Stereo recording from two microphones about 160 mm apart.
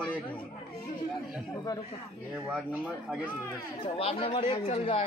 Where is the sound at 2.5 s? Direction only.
5° right (ahead or behind).